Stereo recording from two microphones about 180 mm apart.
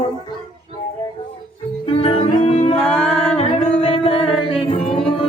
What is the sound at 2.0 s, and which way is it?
Music, 35° left (ahead or behind).